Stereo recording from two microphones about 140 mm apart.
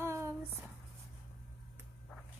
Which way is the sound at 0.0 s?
20° right (ahead or behind).